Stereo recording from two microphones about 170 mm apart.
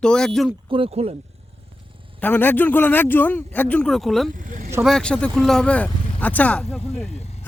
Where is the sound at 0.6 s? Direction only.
30° right (ahead or behind).